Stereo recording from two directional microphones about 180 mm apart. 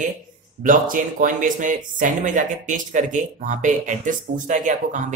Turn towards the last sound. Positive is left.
turn(degrees=-45)  # may be behind; listen again after turning